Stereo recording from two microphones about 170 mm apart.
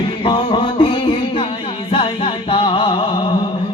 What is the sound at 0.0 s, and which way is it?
Music, 30° left (ahead or behind).